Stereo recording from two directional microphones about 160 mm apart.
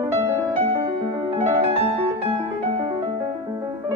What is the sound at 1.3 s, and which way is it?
Music, 40° right (ahead or behind).